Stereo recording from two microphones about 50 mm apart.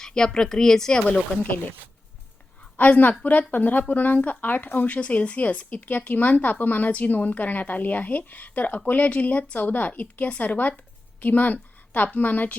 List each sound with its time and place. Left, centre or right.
0.0 s speech: centre
2.7 s a woman's voice: left